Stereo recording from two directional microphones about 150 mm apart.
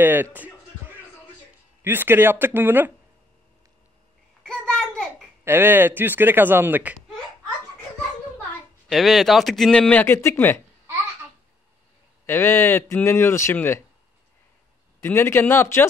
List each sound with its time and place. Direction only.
0.0 s music: 15° right (ahead or behind)
1.8 s speech: 15° right (ahead or behind)
4.4 s a sound: 5° left (ahead or behind)
5.4 s speech: 15° right (ahead or behind)
8.8 s speech: centre (ahead or behind)
12.3 s speech: 15° left (ahead or behind)
15.0 s speech: 15° left (ahead or behind)